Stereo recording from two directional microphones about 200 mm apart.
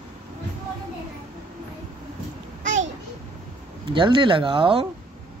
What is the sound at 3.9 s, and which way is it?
Speech, 25° right (ahead or behind).